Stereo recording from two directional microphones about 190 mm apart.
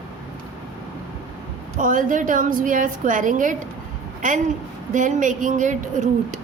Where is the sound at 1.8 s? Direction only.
45° right (ahead or behind).